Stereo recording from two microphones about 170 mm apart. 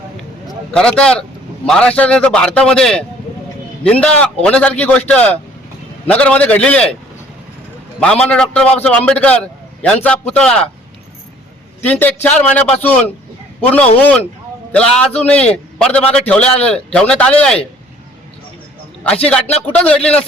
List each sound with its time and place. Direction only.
0.4 s a man's voice: 5° left (ahead or behind)
7.9 s a man's voice: 5° left (ahead or behind)
11.8 s a man's voice: 10° left (ahead or behind)
19.6 s a man's voice: 10° left (ahead or behind)